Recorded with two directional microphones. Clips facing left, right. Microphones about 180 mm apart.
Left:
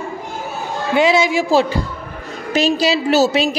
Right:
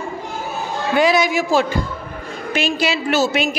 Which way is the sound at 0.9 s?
25° left (ahead or behind).